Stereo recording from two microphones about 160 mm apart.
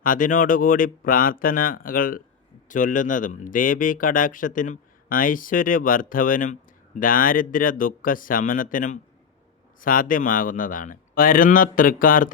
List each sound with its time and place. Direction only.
0.0 s a man's voice: 55° left (ahead or behind)